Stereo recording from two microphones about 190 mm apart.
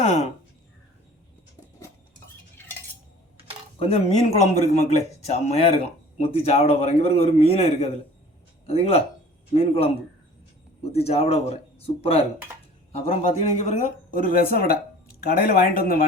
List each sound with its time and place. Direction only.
0.0 s speech: 35° left (ahead or behind)
2.6 s cutlery: 10° left (ahead or behind)
3.8 s speech: 35° left (ahead or behind)
10.9 s speech: 30° left (ahead or behind); by 16.0 s 50° left (ahead or behind)